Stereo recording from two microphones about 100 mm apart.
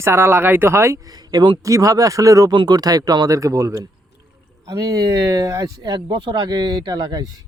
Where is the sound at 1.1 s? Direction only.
45° right (ahead or behind).